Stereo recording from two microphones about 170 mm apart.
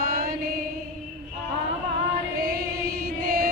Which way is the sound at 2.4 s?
60° right (ahead or behind).